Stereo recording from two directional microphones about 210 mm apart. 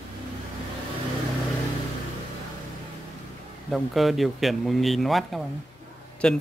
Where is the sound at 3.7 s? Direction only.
Centre (ahead or behind).